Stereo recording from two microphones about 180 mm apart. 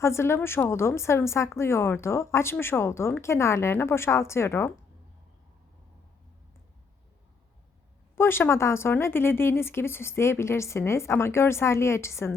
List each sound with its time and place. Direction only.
0.0 s speech: 15° left (ahead or behind)
8.1 s speech: 15° left (ahead or behind)